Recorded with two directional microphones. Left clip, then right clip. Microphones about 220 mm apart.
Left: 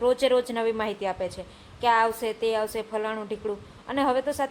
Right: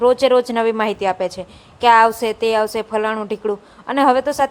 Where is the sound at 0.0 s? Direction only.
25° right (ahead or behind).